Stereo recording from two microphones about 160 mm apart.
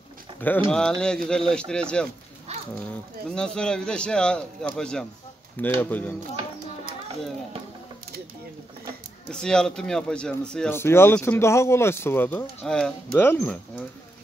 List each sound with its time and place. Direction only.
0.7 s speech: 5° left (ahead or behind)
2.5 s a sound: 40° right (ahead or behind)
3.3 s speech: 5° left (ahead or behind)
9.3 s speech: 5° left (ahead or behind)
10.7 s speech: 15° left (ahead or behind)